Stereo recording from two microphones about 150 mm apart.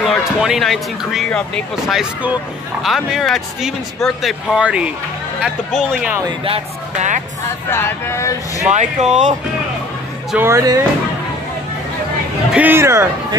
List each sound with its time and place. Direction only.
0.0 s speech: centre (ahead or behind)
6.4 s speech: 40° right (ahead or behind)
7.7 s speech: 20° left (ahead or behind)
8.6 s speech: 50° right (ahead or behind)
10.3 s speech: 15° right (ahead or behind)
12.5 s speech: 15° right (ahead or behind)